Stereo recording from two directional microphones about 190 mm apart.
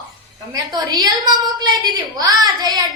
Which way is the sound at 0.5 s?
20° right (ahead or behind).